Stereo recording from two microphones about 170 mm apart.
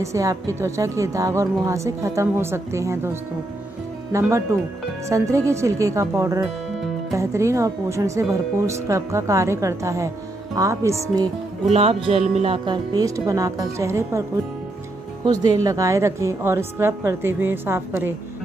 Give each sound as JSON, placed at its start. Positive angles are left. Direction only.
{"t": 0.0, "sound": "speech", "side_deg": -20}
{"t": 11.7, "sound": "music", "side_deg": -35}
{"t": 12.6, "sound": "speech", "side_deg": -25}
{"t": 15.4, "sound": "speech", "side_deg": -20}